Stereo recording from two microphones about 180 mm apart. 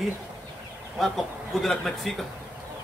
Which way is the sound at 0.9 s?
Centre (ahead or behind).